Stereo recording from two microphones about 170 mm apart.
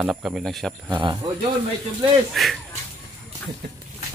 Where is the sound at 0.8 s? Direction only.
30° right (ahead or behind).